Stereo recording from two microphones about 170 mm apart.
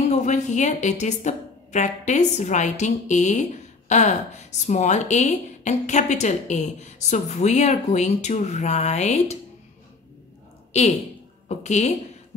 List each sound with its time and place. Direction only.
0.1 s a woman's voice: 45° left (ahead or behind)
11.4 s a woman's voice: 40° left (ahead or behind)